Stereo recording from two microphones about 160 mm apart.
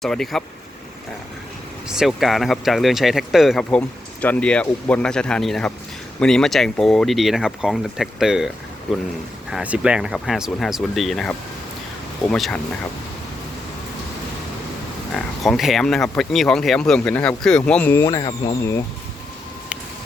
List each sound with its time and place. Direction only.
0.0 s speech: centre (ahead or behind)
1.9 s speech: centre (ahead or behind)
9.5 s speech: 5° right (ahead or behind)
15.1 s speech: centre (ahead or behind)
18.0 s speech: 20° left (ahead or behind)